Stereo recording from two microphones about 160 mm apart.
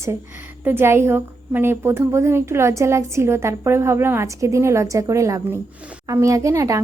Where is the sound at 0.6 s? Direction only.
15° right (ahead or behind).